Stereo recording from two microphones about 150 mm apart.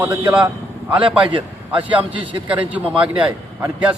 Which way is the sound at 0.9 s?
35° right (ahead or behind).